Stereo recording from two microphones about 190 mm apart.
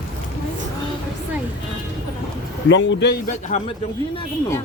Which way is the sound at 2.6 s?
75° left (ahead or behind).